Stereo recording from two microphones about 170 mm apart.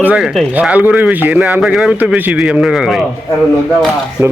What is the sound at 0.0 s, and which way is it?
A man's voice, 5° right (ahead or behind).